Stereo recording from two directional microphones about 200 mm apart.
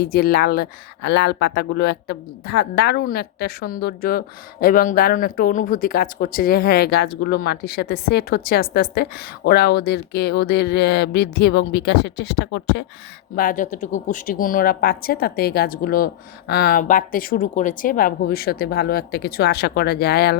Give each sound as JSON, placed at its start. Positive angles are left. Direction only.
{"t": 0.0, "sound": "speech", "side_deg": 50}
{"t": 13.3, "sound": "speech", "side_deg": 45}